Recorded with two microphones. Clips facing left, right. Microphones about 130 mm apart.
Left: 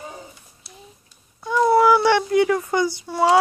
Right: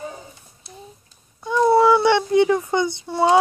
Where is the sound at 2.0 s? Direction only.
20° right (ahead or behind).